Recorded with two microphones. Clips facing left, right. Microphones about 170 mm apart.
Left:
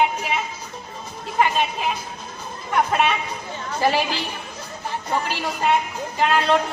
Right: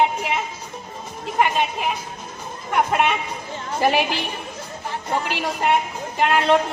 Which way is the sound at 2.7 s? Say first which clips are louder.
Even; 15° right (ahead or behind).